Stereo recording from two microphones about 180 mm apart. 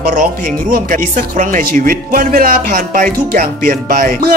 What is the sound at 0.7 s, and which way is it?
Music, 50° right (ahead or behind).